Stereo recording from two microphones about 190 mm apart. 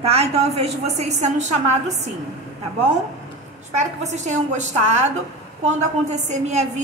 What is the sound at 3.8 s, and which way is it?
A woman's voice, 40° right (ahead or behind).